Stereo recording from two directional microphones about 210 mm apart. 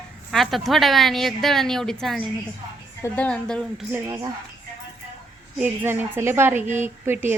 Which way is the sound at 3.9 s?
20° right (ahead or behind).